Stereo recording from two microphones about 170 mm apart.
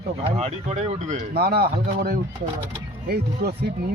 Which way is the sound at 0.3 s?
40° right (ahead or behind).